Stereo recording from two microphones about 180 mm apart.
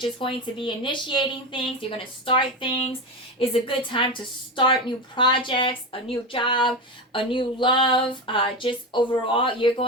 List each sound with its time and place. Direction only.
0.0 s a woman's voice: 30° left (ahead or behind)